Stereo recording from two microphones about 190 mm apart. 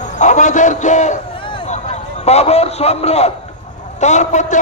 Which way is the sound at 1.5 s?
30° left (ahead or behind).